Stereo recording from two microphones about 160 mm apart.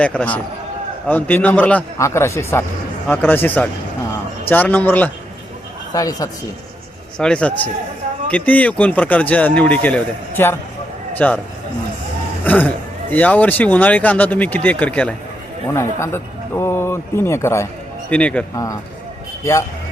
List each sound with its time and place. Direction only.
0.0 s speech: 10° left (ahead or behind)
5.9 s a man's voice: 25° left (ahead or behind)
7.2 s speech: 5° left (ahead or behind)
12.5 s speech: 10° left (ahead or behind)
18.5 s a man's voice: 20° left (ahead or behind)